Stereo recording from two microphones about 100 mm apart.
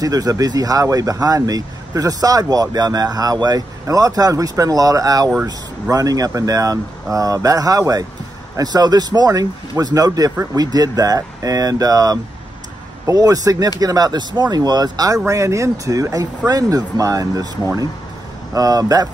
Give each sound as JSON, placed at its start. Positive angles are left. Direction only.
{"t": 0.0, "sound": "speech", "side_deg": -40}